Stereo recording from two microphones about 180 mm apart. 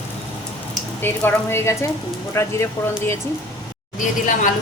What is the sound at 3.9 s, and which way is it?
Speech, 45° left (ahead or behind).